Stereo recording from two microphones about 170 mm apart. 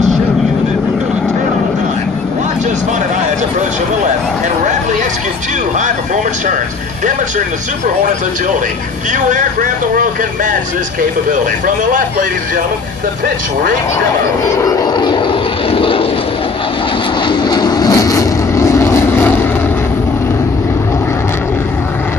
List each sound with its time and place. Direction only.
9.1 s speech: 50° right (ahead or behind)
11.3 s speech: 50° right (ahead or behind)
14.5 s vehicle: 20° left (ahead or behind)
17.2 s vehicle: 25° left (ahead or behind)